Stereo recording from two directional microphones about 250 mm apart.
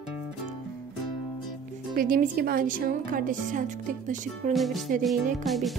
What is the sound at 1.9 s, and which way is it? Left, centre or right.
A woman's voice, right.